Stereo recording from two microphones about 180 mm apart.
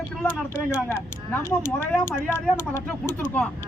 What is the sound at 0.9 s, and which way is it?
A man's voice, 15° left (ahead or behind).